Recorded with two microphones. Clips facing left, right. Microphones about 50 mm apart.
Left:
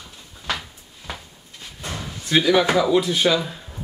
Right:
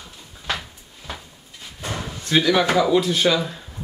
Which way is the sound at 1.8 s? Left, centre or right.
Right.